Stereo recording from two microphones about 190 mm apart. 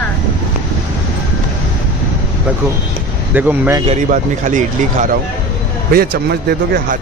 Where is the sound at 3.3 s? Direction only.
10° right (ahead or behind).